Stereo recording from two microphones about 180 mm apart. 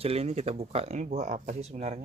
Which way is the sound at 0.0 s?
35° right (ahead or behind).